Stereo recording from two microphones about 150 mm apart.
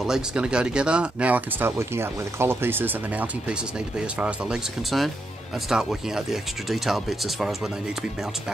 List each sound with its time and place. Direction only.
0.0 s speech: 5° right (ahead or behind)